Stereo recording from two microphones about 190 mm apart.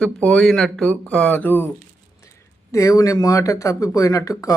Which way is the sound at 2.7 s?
15° left (ahead or behind).